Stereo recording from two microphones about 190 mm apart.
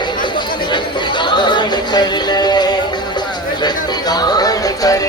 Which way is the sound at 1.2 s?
25° left (ahead or behind).